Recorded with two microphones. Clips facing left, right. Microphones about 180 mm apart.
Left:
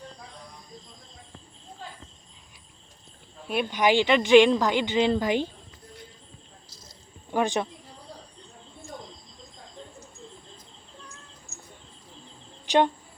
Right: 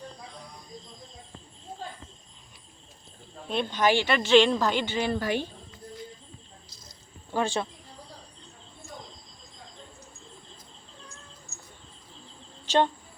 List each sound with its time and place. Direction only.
3.5 s a woman's voice: 10° left (ahead or behind)
7.3 s speech: 15° left (ahead or behind)
12.6 s a sound: 15° left (ahead or behind)